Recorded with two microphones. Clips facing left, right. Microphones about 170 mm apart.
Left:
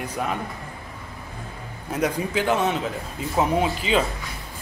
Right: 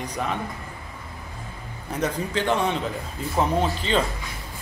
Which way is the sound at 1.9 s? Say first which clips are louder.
Left 2 dB; 10° left (ahead or behind).